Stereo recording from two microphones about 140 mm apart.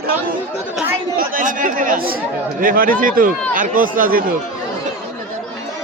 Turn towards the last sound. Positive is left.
turn(degrees=-90)